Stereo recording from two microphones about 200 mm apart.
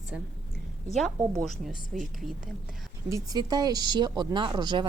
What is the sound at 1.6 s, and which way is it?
Speech, centre (ahead or behind).